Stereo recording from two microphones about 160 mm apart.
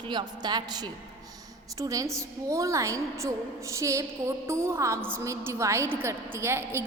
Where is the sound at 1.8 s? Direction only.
20° right (ahead or behind).